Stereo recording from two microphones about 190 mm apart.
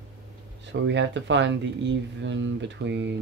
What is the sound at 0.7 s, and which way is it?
Speech, 70° right (ahead or behind).